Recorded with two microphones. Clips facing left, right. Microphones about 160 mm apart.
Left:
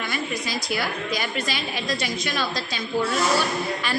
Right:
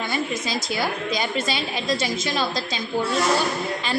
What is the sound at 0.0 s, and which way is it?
A woman's voice, 25° right (ahead or behind).